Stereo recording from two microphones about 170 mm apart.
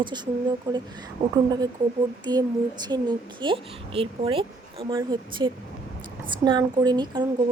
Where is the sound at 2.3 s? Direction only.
25° right (ahead or behind).